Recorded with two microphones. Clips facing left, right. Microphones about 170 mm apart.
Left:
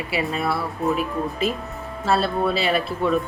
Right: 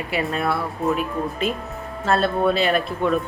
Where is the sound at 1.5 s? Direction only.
40° left (ahead or behind).